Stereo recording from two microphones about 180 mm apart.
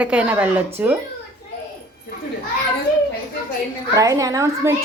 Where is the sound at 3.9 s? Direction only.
20° right (ahead or behind).